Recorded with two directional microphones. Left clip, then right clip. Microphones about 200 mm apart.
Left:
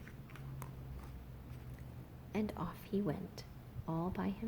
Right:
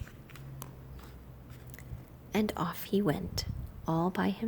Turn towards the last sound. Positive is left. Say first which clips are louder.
# right 9 dB
turn(degrees=-40)  # may be behind; listen again after turning